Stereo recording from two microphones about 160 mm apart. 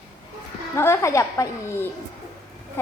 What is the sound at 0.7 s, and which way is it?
Speech, 15° left (ahead or behind).